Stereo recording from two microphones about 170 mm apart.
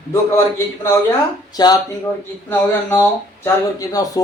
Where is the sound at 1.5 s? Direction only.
25° left (ahead or behind).